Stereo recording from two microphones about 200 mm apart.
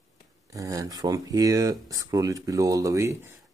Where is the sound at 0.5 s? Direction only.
15° right (ahead or behind).